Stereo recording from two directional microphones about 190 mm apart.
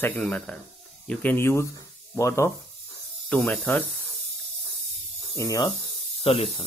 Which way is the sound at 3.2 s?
5° left (ahead or behind).